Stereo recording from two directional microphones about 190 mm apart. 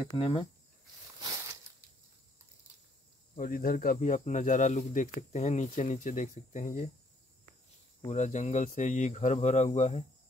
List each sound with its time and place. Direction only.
0.2 s speech: 30° left (ahead or behind)
3.3 s speech: 50° left (ahead or behind)
8.0 s speech: 35° left (ahead or behind)